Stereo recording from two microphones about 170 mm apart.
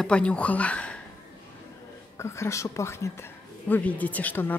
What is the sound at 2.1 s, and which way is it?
Speech, 15° left (ahead or behind).